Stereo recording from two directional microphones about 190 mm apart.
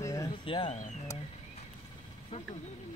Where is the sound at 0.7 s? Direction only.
40° left (ahead or behind).